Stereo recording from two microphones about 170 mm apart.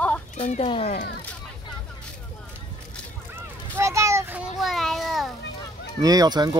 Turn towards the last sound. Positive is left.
turn(degrees=-25)  # may be behind; listen again after turning